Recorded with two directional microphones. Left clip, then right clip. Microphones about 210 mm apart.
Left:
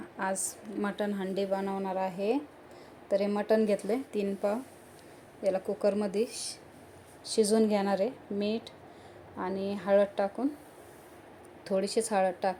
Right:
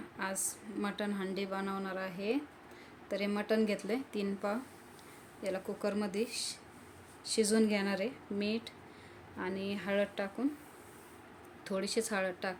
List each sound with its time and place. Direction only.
0.2 s a woman's voice: 5° left (ahead or behind)
11.6 s a woman's voice: centre (ahead or behind)